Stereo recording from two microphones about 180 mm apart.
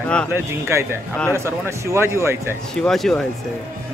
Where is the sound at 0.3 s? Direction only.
15° right (ahead or behind).